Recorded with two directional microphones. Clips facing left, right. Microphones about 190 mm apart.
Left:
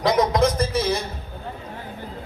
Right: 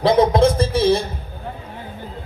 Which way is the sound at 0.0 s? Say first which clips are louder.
Right 5 dB; 30° right (ahead or behind).